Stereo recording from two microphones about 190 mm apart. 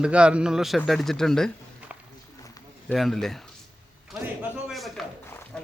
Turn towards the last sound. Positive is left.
turn(degrees=10)  # may be behind; listen again after turning